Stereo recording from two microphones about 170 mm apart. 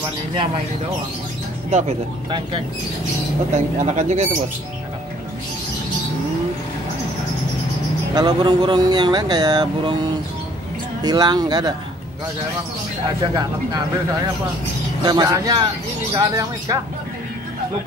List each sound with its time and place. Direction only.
1.7 s speech: 40° right (ahead or behind)
8.1 s speech: 25° right (ahead or behind)
11.0 s speech: 25° right (ahead or behind)
13.2 s speech: 25° right (ahead or behind)
15.0 s speech: 25° right (ahead or behind)